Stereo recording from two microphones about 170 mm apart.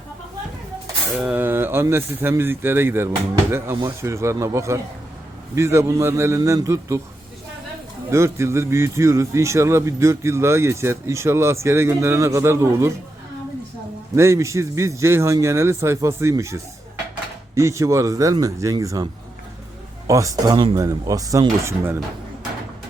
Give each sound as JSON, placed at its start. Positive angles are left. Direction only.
{"t": 1.2, "sound": "a man's voice", "side_deg": -10}
{"t": 8.1, "sound": "a man's voice", "side_deg": -15}
{"t": 14.2, "sound": "a man's voice", "side_deg": -15}
{"t": 20.1, "sound": "speech", "side_deg": -20}